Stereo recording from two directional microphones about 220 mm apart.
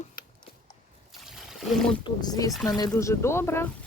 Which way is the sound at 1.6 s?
Centre (ahead or behind).